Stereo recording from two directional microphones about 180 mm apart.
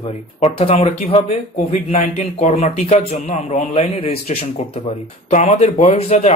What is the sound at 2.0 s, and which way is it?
Speech, 50° left (ahead or behind).